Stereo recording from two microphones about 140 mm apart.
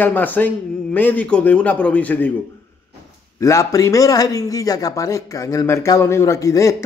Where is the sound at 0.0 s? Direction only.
10° left (ahead or behind).